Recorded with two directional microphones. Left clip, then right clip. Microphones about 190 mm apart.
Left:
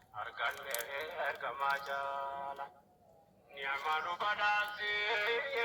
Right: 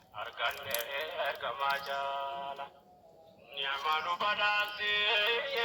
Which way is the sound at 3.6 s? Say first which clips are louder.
Right 3 dB; 35° left (ahead or behind).